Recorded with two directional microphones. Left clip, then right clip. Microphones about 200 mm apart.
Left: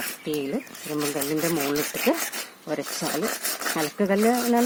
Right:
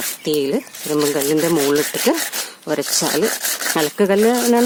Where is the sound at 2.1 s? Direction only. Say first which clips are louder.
Right 6 dB; 40° right (ahead or behind).